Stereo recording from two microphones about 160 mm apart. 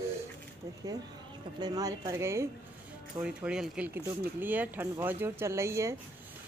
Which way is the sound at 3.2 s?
5° right (ahead or behind).